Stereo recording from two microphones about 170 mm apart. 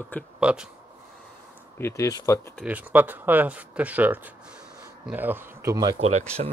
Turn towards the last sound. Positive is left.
turn(degrees=-35)  # may be behind; listen again after turning